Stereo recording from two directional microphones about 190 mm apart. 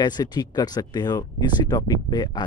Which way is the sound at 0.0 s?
20° left (ahead or behind).